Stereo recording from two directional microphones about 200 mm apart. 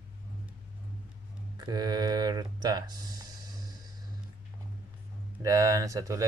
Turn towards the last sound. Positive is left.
turn(degrees=-15)  # may be behind; listen again after turning